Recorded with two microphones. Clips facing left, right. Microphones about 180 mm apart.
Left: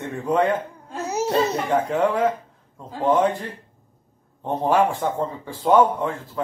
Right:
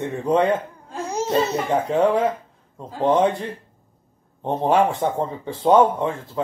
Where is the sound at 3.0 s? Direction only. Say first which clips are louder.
Right 1 dB; 25° right (ahead or behind).